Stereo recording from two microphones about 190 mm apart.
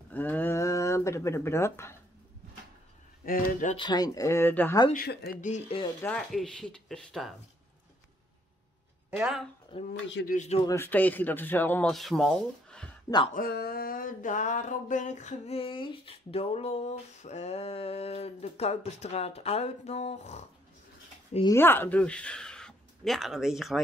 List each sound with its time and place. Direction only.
0.1 s speech: 10° left (ahead or behind)
3.3 s speech: 50° left (ahead or behind)
3.7 s speech: 20° left (ahead or behind)
4.9 s speech: 55° left (ahead or behind)
5.4 s a sound: 35° left (ahead or behind)
6.0 s speech: 5° left (ahead or behind)
9.1 s speech: 5° right (ahead or behind)
9.7 s speech: 25° left (ahead or behind)
10.2 s a sound: 40° left (ahead or behind)
10.6 s a man's voice: 15° left (ahead or behind)
13.3 s a sound: 55° left (ahead or behind); by 20.4 s 35° left (ahead or behind)
21.5 s speech: 10° left (ahead or behind)